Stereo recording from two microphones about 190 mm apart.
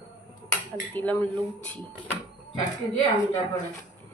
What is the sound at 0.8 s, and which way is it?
Speech, 10° left (ahead or behind).